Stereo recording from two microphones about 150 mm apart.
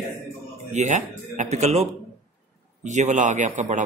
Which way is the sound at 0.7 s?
50° right (ahead or behind).